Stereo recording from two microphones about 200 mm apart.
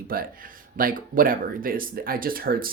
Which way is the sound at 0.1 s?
45° right (ahead or behind).